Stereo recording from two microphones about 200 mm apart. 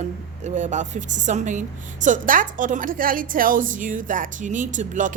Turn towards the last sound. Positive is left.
turn(degrees=-40)  # may be behind; listen again after turning